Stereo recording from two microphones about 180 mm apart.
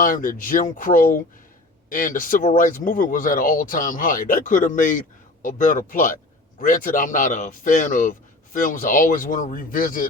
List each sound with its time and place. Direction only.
0.0 s speech: 50° left (ahead or behind)